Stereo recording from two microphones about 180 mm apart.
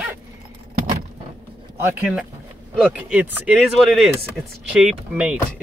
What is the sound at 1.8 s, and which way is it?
Speech, 5° right (ahead or behind).